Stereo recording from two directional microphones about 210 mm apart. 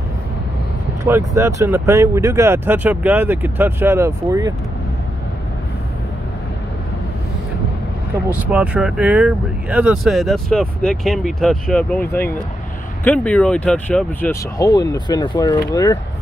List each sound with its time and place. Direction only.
1.0 s speech: 10° right (ahead or behind)
8.5 s speech: 5° right (ahead or behind); by 16.0 s 15° left (ahead or behind)